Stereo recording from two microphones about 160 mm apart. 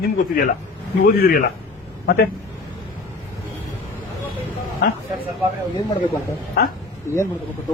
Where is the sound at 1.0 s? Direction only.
60° left (ahead or behind).